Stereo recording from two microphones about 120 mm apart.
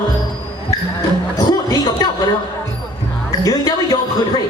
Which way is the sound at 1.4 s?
35° left (ahead or behind).